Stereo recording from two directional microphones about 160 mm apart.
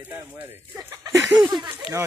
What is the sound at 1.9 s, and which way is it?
Speech, 35° left (ahead or behind).